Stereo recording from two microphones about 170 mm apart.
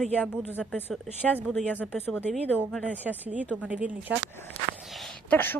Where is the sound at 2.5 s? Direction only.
10° right (ahead or behind).